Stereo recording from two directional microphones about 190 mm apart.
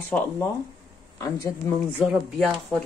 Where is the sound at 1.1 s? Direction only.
20° left (ahead or behind).